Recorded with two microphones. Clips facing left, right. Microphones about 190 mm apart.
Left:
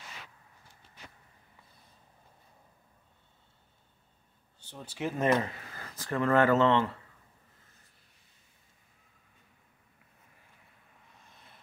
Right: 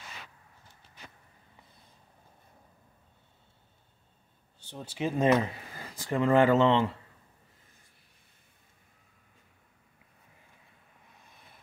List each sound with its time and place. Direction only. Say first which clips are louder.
4.6 s speech: right 3 dB; 15° right (ahead or behind)